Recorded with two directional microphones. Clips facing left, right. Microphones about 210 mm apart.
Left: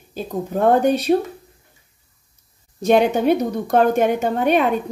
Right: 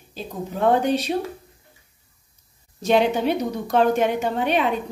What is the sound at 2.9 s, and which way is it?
A woman's voice, 50° left (ahead or behind).